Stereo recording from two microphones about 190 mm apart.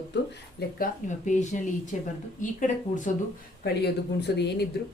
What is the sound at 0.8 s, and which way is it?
A woman's voice, 40° left (ahead or behind).